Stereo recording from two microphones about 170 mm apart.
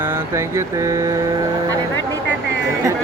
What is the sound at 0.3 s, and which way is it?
Speech, 15° right (ahead or behind).